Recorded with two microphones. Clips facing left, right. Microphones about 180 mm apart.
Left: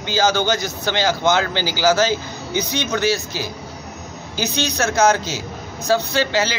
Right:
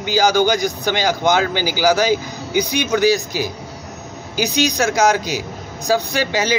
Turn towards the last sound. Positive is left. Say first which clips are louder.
# even
turn(degrees=-15)  # may be behind; listen again after turning